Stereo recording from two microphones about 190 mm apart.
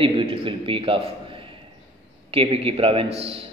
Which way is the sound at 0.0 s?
30° right (ahead or behind).